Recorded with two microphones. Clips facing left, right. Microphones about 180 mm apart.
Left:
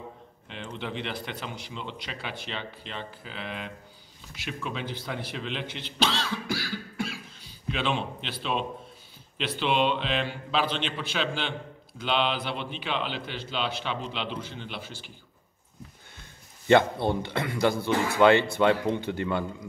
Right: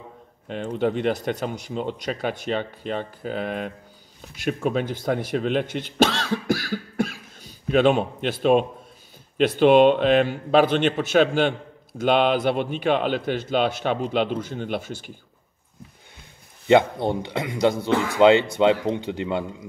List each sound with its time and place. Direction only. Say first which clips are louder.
0.5 s speech: right 12 dB; 45° right (ahead or behind)
16.6 s a man's voice: right 3 dB; 15° right (ahead or behind)